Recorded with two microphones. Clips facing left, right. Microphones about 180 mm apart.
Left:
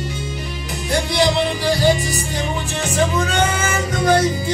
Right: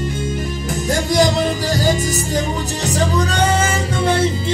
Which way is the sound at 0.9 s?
45° right (ahead or behind).